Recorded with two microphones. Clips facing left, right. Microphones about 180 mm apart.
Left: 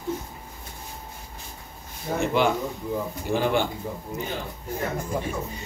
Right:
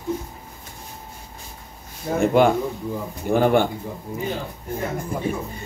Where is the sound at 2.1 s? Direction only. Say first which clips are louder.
Right 6 dB; 50° right (ahead or behind).